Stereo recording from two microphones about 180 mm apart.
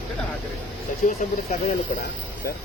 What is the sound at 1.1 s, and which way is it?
Speech, 45° left (ahead or behind).